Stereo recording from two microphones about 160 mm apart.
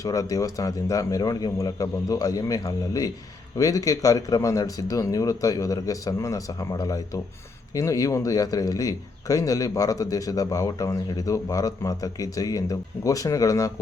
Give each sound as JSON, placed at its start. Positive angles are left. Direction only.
{"t": 0.0, "sound": "speech", "side_deg": 20}